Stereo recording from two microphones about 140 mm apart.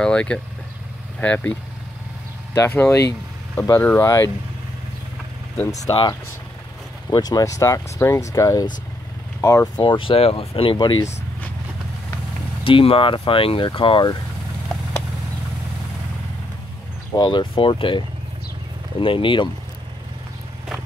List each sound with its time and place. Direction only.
0.0 s vehicle: 5° left (ahead or behind)
1.2 s speech: 10° left (ahead or behind)
2.5 s speech: 20° left (ahead or behind)
7.1 s speech: 30° left (ahead or behind)
9.8 s speech: 35° left (ahead or behind)
12.6 s speech: 40° left (ahead or behind)
17.1 s speech: 30° left (ahead or behind)